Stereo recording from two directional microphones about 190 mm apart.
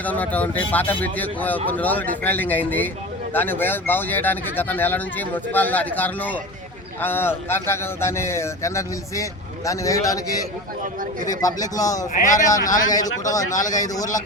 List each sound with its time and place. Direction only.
0.0 s speech: 10° left (ahead or behind)
11.3 s a man's voice: 20° left (ahead or behind)
12.1 s speech: 40° left (ahead or behind)
12.5 s a man's voice: 20° left (ahead or behind)